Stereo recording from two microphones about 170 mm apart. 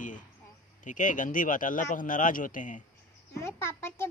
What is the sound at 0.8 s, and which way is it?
Speech, 50° left (ahead or behind).